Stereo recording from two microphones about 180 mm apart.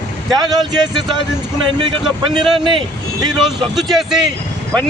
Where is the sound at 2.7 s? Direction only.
30° right (ahead or behind).